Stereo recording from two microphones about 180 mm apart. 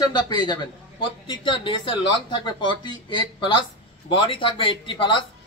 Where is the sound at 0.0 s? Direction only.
25° left (ahead or behind).